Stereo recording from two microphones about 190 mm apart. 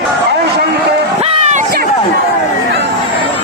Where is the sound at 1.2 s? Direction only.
30° right (ahead or behind).